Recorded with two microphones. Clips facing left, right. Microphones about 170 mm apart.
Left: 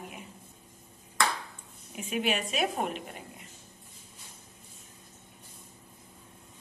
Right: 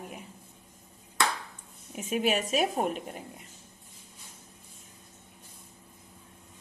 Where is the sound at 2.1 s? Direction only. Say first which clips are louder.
Right 3 dB; 40° right (ahead or behind).